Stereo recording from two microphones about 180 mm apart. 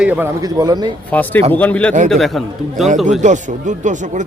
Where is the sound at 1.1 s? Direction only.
10° left (ahead or behind).